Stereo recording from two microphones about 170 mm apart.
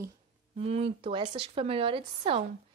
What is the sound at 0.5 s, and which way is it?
A woman's voice, 35° right (ahead or behind).